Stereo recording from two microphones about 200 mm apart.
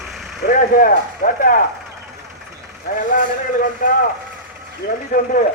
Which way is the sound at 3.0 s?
40° left (ahead or behind).